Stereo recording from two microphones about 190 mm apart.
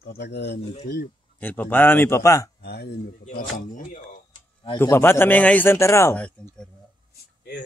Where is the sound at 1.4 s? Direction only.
10° left (ahead or behind).